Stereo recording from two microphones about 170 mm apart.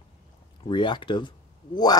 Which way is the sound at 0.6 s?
30° left (ahead or behind).